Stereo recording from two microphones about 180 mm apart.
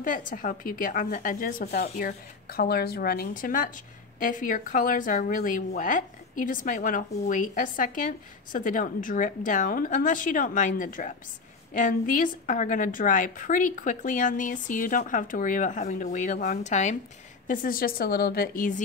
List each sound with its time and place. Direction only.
0.3 s a woman's voice: 50° left (ahead or behind)